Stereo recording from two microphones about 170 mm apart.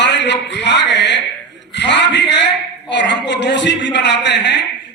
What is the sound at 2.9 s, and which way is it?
A man's voice, 90° left.